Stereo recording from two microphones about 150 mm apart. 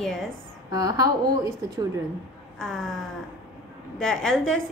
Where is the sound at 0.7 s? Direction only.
25° right (ahead or behind).